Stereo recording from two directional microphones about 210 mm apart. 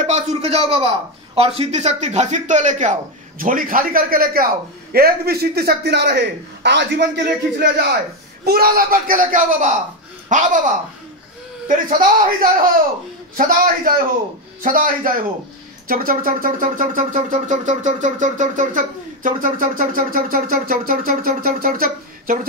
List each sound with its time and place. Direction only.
0.0 s a man's voice: 30° right (ahead or behind)